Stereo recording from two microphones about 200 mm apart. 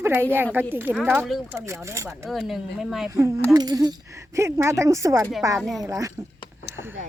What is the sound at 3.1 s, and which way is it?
Speech, 15° right (ahead or behind).